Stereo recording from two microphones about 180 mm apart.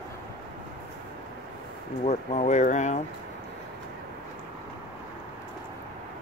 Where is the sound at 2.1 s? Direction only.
40° left (ahead or behind).